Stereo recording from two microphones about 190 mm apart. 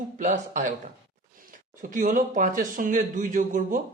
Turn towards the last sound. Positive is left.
turn(degrees=-45)  # may be behind; listen again after turning